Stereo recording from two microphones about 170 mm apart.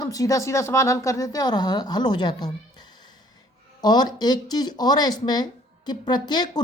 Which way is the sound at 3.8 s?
25° left (ahead or behind).